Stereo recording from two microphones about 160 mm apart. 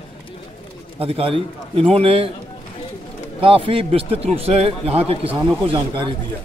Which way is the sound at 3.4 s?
35° right (ahead or behind).